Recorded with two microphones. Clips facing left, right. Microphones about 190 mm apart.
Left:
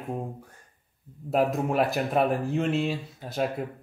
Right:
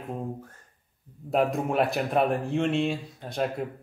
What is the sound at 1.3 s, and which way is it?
A man's voice, centre (ahead or behind).